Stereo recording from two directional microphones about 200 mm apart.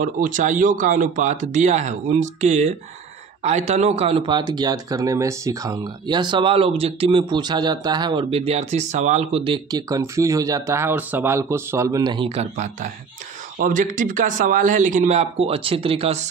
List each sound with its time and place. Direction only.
0.0 s speech: 40° right (ahead or behind); by 12.4 s 25° right (ahead or behind)
13.6 s speech: 40° right (ahead or behind)